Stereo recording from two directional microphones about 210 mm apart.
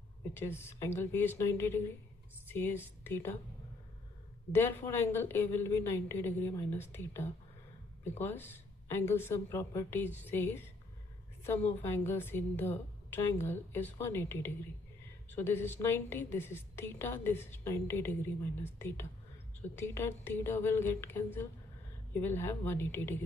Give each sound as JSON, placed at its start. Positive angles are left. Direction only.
{"t": 0.3, "sound": "a woman's voice", "side_deg": 10}
{"t": 4.5, "sound": "a woman's voice", "side_deg": 10}